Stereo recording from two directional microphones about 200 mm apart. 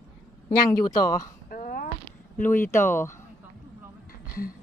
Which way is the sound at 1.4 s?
45° left (ahead or behind).